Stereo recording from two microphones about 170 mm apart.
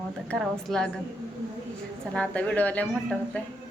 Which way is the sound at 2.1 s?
5° left (ahead or behind).